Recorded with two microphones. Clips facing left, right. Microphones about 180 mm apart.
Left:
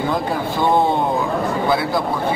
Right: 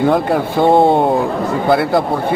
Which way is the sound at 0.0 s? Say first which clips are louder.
Right 7 dB; 60° right (ahead or behind).